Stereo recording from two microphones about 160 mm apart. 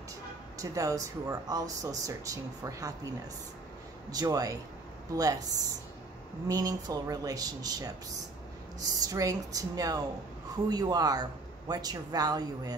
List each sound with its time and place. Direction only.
0.6 s a man's voice: 20° right (ahead or behind)
4.1 s a man's voice: 25° right (ahead or behind)